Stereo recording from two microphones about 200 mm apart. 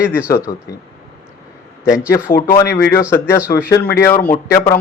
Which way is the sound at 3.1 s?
15° left (ahead or behind).